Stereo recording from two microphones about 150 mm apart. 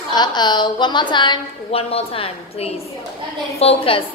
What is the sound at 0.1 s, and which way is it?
A woman's voice, 30° left (ahead or behind).